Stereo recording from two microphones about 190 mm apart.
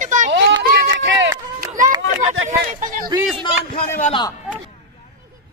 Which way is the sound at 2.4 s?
45° right (ahead or behind).